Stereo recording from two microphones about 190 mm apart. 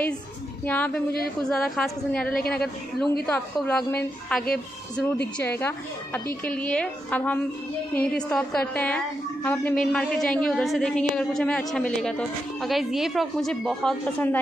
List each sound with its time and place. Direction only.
0.7 s a woman's voice: 10° left (ahead or behind)
5.2 s a woman's voice: 60° left (ahead or behind)
5.6 s a woman's voice: 10° left (ahead or behind)